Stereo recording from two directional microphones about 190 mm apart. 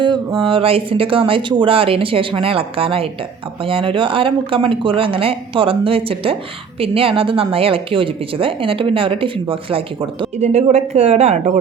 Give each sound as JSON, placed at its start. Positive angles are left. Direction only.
{"t": 0.0, "sound": "speech", "side_deg": -25}